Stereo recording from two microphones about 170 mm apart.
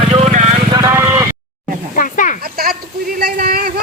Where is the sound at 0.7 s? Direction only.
20° right (ahead or behind).